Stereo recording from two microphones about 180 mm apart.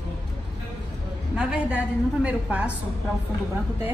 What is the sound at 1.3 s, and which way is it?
A woman's voice, 5° right (ahead or behind).